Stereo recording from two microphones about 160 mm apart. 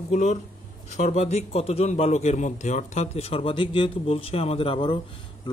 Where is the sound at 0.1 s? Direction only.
45° left (ahead or behind).